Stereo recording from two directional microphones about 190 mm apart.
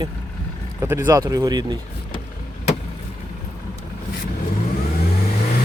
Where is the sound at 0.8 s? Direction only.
15° right (ahead or behind).